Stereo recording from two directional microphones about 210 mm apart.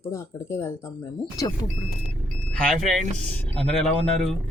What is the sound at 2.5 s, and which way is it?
Speech, 5° left (ahead or behind).